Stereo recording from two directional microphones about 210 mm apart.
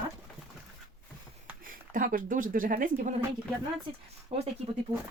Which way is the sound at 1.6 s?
40° right (ahead or behind).